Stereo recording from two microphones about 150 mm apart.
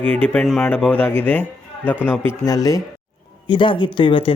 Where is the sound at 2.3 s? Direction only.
25° left (ahead or behind).